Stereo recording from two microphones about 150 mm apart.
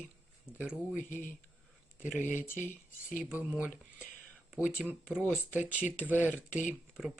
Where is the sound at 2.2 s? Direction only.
55° left (ahead or behind).